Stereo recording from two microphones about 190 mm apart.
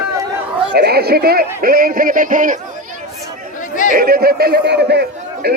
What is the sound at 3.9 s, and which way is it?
A man's voice, 50° right (ahead or behind).